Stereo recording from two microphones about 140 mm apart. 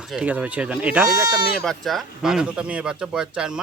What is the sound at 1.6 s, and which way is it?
Speech, centre (ahead or behind).